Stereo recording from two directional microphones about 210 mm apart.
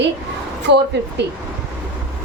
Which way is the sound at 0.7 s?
55° right (ahead or behind).